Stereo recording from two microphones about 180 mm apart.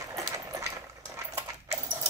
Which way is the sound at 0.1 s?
20° right (ahead or behind).